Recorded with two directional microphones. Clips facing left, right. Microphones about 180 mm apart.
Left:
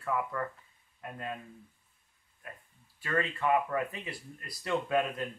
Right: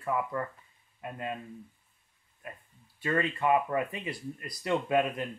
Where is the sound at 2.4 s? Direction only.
20° right (ahead or behind).